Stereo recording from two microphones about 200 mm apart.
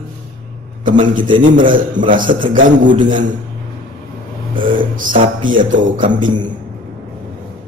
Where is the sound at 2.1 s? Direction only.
40° right (ahead or behind).